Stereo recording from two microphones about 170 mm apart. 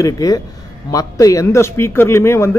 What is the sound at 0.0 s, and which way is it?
A man's voice, 20° left (ahead or behind).